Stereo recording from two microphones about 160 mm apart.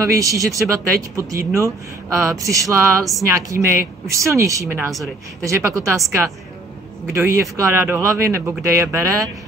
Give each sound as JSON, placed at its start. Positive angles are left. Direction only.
{"t": 0.0, "sound": "speech", "side_deg": -20}
{"t": 7.1, "sound": "speech", "side_deg": -20}